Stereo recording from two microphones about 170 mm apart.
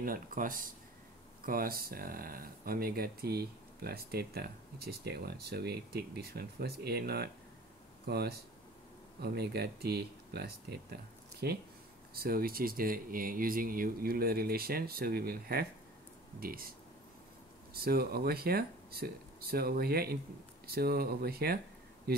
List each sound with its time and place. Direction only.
0.0 s speech: 55° right (ahead or behind)
17.7 s speech: 65° right (ahead or behind)